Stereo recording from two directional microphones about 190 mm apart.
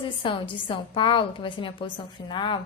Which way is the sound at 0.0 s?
25° left (ahead or behind).